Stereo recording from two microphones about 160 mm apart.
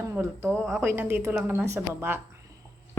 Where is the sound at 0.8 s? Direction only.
15° right (ahead or behind).